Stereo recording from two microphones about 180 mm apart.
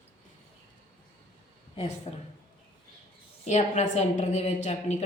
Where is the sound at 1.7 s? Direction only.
35° left (ahead or behind).